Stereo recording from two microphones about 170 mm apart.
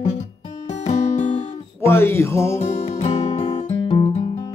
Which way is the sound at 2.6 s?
40° left (ahead or behind).